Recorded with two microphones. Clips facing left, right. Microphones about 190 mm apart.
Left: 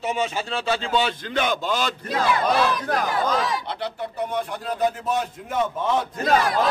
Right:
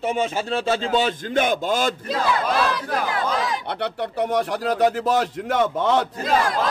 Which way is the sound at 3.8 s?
75° right (ahead or behind).